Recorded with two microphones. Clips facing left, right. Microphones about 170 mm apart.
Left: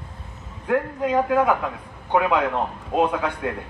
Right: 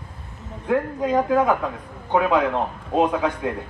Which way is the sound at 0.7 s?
5° left (ahead or behind).